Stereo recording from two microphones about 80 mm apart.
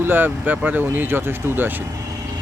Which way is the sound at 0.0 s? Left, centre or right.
Right.